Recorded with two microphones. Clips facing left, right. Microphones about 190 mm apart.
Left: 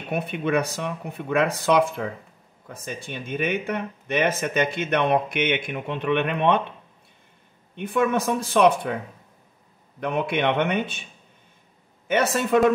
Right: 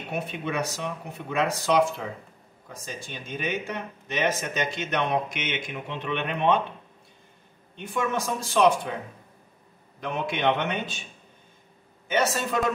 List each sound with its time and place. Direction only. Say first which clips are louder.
0.1 s speech: left 7 dB; 60° left (ahead or behind)
7.7 s speech: left 6 dB; 55° left (ahead or behind)
9.9 s speech: left 5 dB; 60° left (ahead or behind)
12.1 s speech: left 5 dB; 60° left (ahead or behind)